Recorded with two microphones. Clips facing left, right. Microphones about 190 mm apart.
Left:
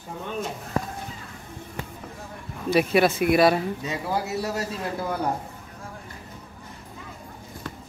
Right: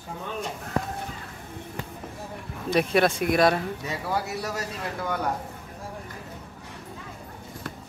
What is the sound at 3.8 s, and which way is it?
Speech, 20° left (ahead or behind).